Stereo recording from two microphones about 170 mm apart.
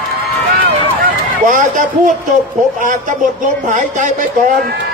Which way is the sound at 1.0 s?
50° right (ahead or behind).